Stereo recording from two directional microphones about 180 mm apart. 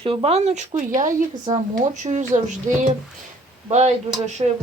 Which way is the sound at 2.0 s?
40° right (ahead or behind).